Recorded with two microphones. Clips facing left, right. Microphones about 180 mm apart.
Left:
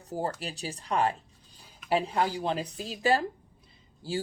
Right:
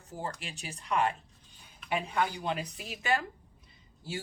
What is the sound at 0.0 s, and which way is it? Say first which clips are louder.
Speech: left 6 dB; 35° left (ahead or behind).